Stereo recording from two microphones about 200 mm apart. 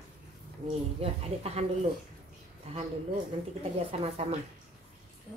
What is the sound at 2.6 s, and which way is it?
A woman's voice, 30° right (ahead or behind).